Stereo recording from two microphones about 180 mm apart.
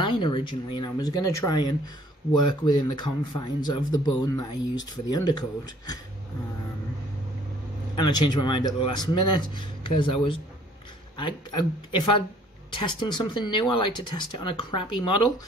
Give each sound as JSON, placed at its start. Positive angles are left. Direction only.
{"t": 0.0, "sound": "a man's voice", "side_deg": 25}
{"t": 7.9, "sound": "a man's voice", "side_deg": 25}